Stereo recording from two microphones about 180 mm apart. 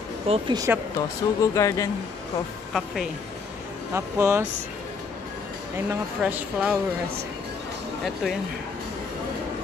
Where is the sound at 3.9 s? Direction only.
15° right (ahead or behind).